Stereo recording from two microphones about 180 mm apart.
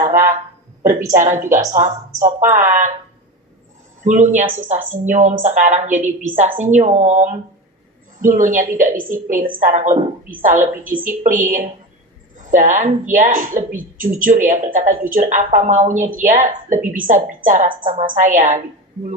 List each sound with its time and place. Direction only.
0.0 s a woman's voice: 50° right (ahead or behind)
4.0 s a woman's voice: 40° right (ahead or behind)